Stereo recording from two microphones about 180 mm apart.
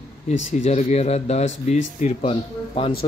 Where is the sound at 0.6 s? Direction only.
40° left (ahead or behind).